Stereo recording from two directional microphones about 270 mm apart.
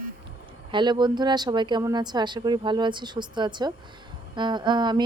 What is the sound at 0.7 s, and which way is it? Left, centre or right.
Speech, centre.